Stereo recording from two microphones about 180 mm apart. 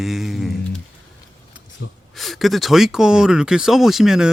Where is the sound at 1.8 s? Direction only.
70° left (ahead or behind).